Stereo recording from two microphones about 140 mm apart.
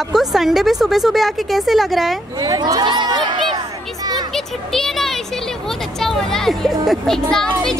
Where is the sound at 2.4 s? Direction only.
25° right (ahead or behind).